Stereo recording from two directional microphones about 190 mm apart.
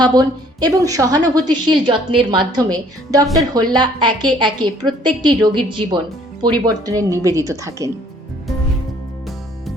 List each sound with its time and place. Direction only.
0.0 s a woman's voice: 20° right (ahead or behind)